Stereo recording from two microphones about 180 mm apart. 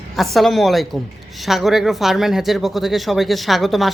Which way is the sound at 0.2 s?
Centre (ahead or behind).